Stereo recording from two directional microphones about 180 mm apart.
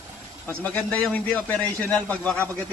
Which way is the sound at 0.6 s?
10° left (ahead or behind).